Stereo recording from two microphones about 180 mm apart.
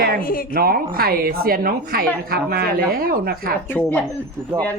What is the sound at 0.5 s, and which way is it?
Speech, 55° right (ahead or behind).